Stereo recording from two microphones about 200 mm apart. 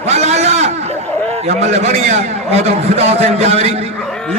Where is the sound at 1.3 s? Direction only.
35° right (ahead or behind).